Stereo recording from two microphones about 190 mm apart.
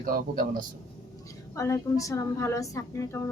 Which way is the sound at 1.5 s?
15° left (ahead or behind).